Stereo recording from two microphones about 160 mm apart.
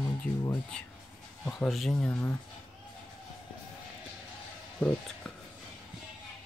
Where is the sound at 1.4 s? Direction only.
5° left (ahead or behind).